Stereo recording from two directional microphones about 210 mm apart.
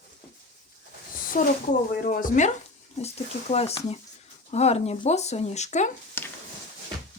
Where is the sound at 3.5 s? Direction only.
30° left (ahead or behind).